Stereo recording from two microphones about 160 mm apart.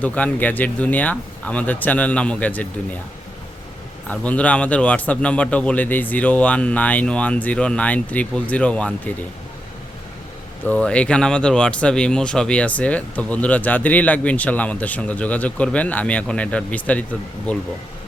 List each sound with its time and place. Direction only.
0.0 s speech: 10° left (ahead or behind)
4.1 s speech: 10° left (ahead or behind)
10.7 s speech: 5° left (ahead or behind)